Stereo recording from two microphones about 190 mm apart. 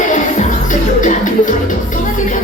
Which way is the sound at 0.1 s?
40° left (ahead or behind).